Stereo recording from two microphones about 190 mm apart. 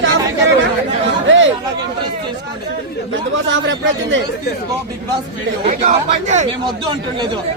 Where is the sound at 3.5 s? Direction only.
75° right (ahead or behind).